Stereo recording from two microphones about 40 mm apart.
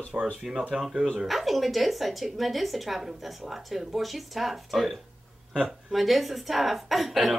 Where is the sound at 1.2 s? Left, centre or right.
Centre.